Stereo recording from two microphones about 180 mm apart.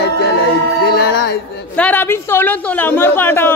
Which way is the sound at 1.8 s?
10° left (ahead or behind).